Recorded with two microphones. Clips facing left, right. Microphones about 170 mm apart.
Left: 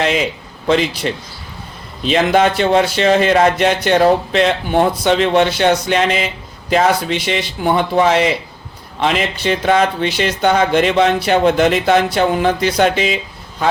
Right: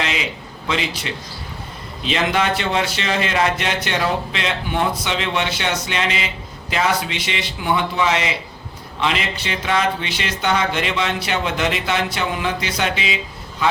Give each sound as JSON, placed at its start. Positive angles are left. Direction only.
{"t": 0.0, "sound": "speech", "side_deg": 45}